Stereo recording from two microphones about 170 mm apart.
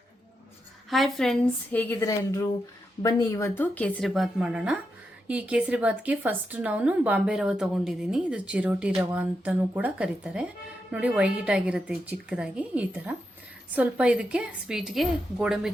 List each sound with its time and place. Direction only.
0.9 s a woman's voice: centre (ahead or behind)